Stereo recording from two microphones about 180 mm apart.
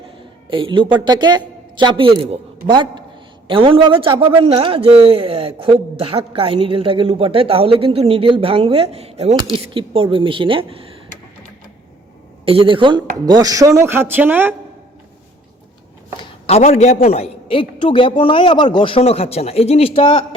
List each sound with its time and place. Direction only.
0.5 s speech: 30° right (ahead or behind)
12.5 s speech: 30° right (ahead or behind); by 14.5 s 10° right (ahead or behind)
16.1 s a man's voice: 35° left (ahead or behind)